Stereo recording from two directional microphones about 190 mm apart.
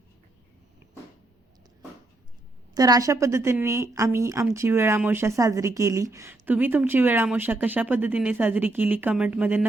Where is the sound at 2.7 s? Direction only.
20° right (ahead or behind).